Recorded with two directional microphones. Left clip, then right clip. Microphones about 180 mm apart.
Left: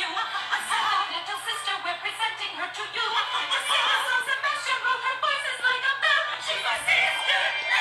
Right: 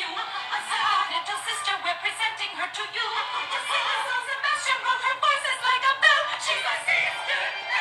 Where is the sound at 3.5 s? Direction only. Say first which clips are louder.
Left 3 dB; 30° left (ahead or behind).